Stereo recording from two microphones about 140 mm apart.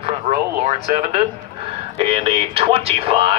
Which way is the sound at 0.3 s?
60° right (ahead or behind).